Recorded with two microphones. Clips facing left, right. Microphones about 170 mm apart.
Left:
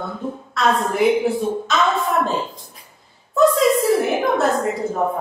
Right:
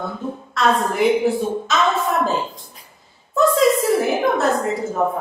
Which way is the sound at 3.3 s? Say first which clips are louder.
Left 1 dB; centre (ahead or behind).